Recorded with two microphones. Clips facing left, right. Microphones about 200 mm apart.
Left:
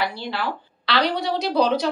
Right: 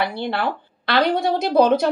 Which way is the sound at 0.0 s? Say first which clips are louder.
Right 4 dB; 55° right (ahead or behind).